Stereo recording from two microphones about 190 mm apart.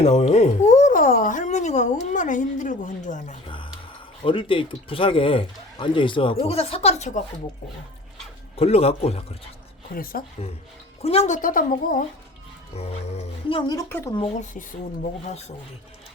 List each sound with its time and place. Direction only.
0.0 s a woman's voice: 35° left (ahead or behind)
4.2 s speech: 25° left (ahead or behind)
8.5 s speech: 30° left (ahead or behind)
9.9 s a woman's voice: 50° left (ahead or behind)
11.0 s a woman's voice: 35° left (ahead or behind)
12.7 s speech: 30° left (ahead or behind); by 14.2 s 15° left (ahead or behind)
15.0 s speech: 35° left (ahead or behind)